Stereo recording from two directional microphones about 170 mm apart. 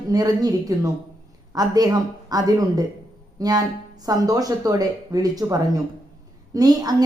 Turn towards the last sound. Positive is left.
turn(degrees=-20)  # may be behind; listen again after turning